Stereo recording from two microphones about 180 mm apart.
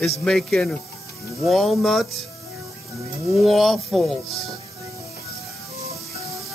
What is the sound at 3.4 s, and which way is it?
Speech, centre (ahead or behind).